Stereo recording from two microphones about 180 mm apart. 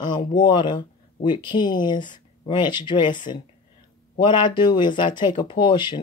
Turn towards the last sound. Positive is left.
turn(degrees=25)  # may be behind; listen again after turning